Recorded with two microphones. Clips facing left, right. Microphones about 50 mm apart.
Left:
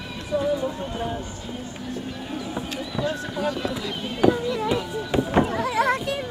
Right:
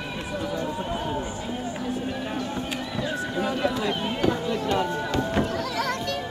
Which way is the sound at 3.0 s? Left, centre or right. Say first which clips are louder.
Left 1 dB; centre.